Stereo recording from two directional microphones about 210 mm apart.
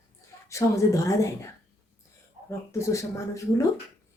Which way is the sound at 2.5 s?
15° left (ahead or behind).